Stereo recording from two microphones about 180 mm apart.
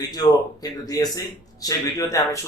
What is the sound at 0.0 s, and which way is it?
A man's voice, 20° left (ahead or behind).